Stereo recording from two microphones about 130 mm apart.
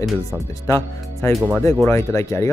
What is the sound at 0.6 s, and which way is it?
Speech, 20° left (ahead or behind).